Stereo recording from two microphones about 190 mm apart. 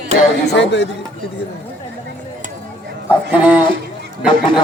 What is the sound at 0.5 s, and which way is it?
Speech, 65° left (ahead or behind).